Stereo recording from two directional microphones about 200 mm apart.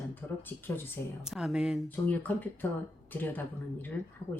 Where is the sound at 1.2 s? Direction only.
Centre (ahead or behind).